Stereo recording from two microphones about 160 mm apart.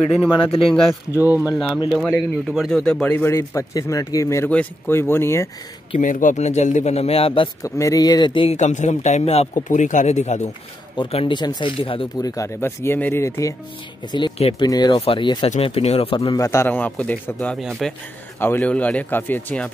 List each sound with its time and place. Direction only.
0.5 s speech: 35° left (ahead or behind)
1.2 s speech: 10° right (ahead or behind)
2.0 s a man's voice: centre (ahead or behind)
5.9 s a man's voice: 55° left (ahead or behind); by 7.4 s 35° left (ahead or behind)
7.6 s speech: 20° left (ahead or behind)
8.5 s a man's voice: 50° left (ahead or behind)
12.2 s a man's voice: 15° left (ahead or behind)
14.1 s speech: 30° left (ahead or behind)
16.3 s a man's voice: 15° left (ahead or behind)
17.6 s speech: centre (ahead or behind)
18.4 s a man's voice: 10° left (ahead or behind)